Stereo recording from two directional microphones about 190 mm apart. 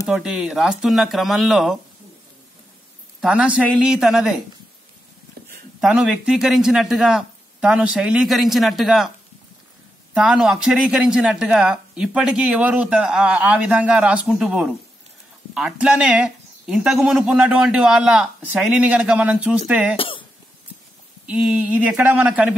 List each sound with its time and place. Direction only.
0.1 s speech: 5° right (ahead or behind)
3.2 s speech: 5° right (ahead or behind)
5.8 s speech: 5° right (ahead or behind)
10.1 s speech: 5° right (ahead or behind)
20.0 s cough: 25° left (ahead or behind)
21.3 s speech: 5° right (ahead or behind)